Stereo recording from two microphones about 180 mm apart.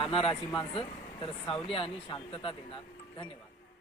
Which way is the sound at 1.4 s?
30° left (ahead or behind).